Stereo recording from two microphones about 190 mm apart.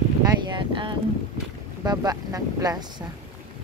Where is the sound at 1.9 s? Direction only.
20° right (ahead or behind).